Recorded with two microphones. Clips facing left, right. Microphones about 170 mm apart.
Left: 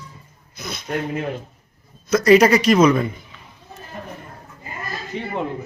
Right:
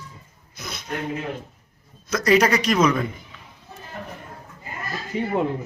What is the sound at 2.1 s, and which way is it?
Speech, 5° left (ahead or behind).